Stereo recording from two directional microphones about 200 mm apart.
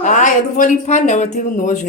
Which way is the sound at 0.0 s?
40° left (ahead or behind).